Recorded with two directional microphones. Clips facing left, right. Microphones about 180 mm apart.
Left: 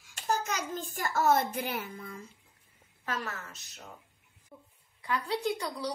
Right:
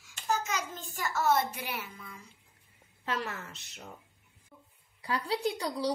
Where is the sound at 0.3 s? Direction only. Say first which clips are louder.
Left 1 dB; 45° left (ahead or behind).